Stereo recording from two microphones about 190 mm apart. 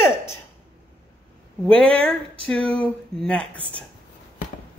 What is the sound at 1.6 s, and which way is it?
Speech, 5° left (ahead or behind).